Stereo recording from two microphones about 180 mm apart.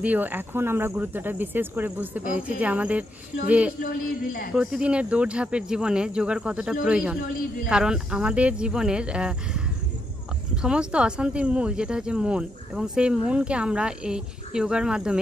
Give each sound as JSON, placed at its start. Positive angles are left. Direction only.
{"t": 0.0, "sound": "speech", "side_deg": -10}
{"t": 3.8, "sound": "speech", "side_deg": 50}
{"t": 4.6, "sound": "speech", "side_deg": -5}